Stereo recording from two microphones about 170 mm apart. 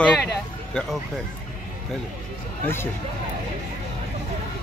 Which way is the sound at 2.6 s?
15° left (ahead or behind).